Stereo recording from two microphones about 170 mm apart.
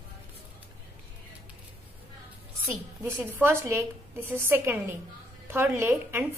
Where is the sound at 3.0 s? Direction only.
15° right (ahead or behind).